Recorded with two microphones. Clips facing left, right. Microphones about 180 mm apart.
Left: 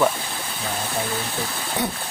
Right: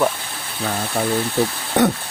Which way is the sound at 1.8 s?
75° right (ahead or behind).